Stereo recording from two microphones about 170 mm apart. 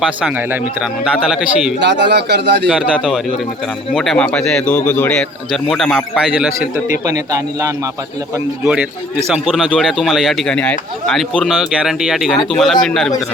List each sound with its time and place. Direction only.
0.2 s speech: 10° right (ahead or behind)
1.8 s speech: 90° right
2.6 s a man's voice: 5° right (ahead or behind)
7.0 s a man's voice: 20° right (ahead or behind)
8.6 s speech: 5° right (ahead or behind)